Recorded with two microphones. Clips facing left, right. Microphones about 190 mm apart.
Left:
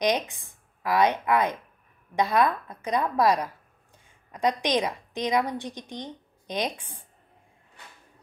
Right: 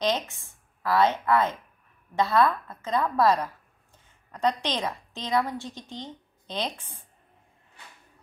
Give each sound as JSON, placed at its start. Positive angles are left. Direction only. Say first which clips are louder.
{"t": 0.0, "sound": "a woman's voice", "louder": "left 2 dB", "side_deg": 15}